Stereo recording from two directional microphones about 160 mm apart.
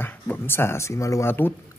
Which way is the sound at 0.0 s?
15° left (ahead or behind).